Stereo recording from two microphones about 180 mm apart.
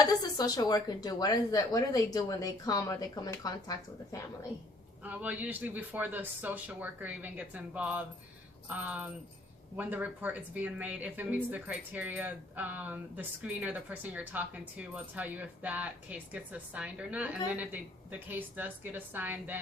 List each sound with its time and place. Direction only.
0.0 s speech: 20° left (ahead or behind)
5.0 s speech: 10° right (ahead or behind)